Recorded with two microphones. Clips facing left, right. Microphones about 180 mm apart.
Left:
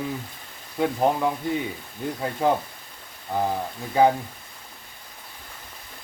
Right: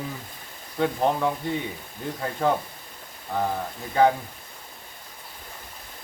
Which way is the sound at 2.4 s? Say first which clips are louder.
Left 1 dB; 15° left (ahead or behind).